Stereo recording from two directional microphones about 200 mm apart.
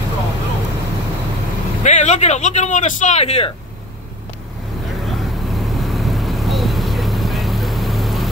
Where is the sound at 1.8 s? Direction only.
35° left (ahead or behind).